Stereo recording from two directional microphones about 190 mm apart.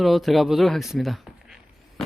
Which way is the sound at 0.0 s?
Centre (ahead or behind).